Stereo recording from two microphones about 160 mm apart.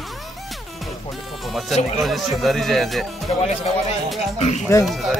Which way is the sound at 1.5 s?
Centre (ahead or behind).